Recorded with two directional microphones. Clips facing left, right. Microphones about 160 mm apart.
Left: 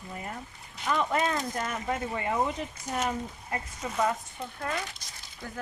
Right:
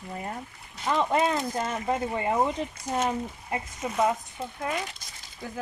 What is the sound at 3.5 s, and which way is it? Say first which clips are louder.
Speech: right 3 dB; 15° right (ahead or behind).